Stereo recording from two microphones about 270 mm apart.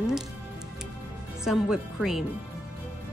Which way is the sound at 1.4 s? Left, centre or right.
Centre.